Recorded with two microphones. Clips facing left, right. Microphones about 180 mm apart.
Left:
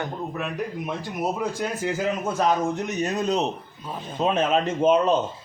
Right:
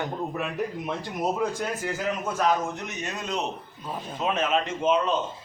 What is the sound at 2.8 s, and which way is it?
A man's voice, 40° left (ahead or behind).